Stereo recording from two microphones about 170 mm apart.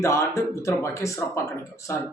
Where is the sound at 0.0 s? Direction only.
15° left (ahead or behind).